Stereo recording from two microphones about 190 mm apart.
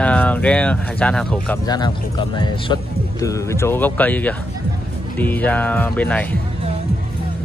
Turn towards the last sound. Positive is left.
turn(degrees=10)  # may be behind; listen again after turning